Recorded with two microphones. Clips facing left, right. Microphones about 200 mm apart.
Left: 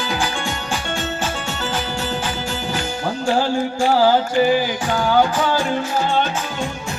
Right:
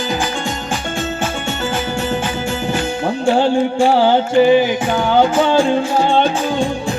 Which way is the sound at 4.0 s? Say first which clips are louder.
Right 2 dB; 25° right (ahead or behind).